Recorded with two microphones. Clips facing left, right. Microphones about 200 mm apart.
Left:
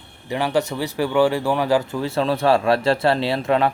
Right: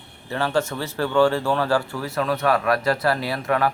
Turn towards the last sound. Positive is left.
turn(degrees=25)  # may be behind; listen again after turning